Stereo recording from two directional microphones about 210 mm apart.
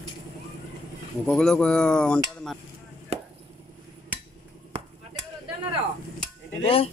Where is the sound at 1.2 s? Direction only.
5° left (ahead or behind).